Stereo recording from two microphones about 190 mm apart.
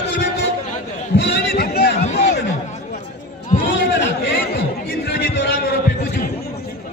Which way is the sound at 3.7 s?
65° left (ahead or behind).